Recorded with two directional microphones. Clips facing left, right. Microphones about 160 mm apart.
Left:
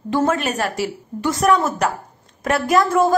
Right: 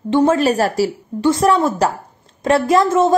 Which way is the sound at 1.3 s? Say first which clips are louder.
Right 3 dB; 25° right (ahead or behind).